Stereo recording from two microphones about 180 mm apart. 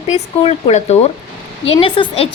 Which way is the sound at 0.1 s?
40° left (ahead or behind).